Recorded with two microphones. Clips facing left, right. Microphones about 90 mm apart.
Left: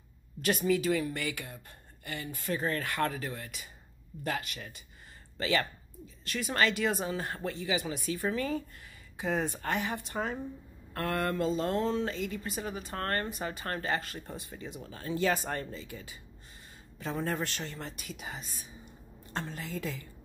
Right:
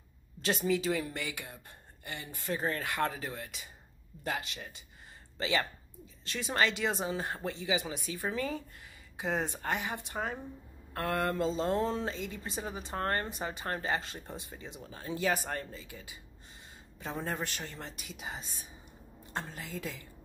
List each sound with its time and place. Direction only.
0.4 s speech: 25° right (ahead or behind)